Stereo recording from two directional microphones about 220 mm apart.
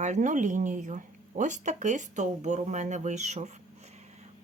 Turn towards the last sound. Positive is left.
turn(degrees=-30)  # may be behind; listen again after turning